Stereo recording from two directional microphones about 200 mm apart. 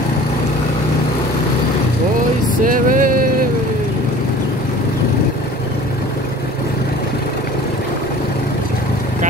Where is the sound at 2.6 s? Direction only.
45° right (ahead or behind).